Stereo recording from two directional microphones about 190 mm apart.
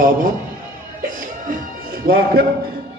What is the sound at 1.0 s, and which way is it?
Music, 45° right (ahead or behind).